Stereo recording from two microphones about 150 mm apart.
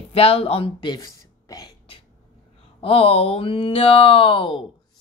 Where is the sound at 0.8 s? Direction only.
25° left (ahead or behind).